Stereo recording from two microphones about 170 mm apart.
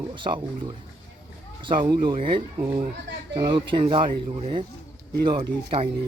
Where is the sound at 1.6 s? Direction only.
30° right (ahead or behind).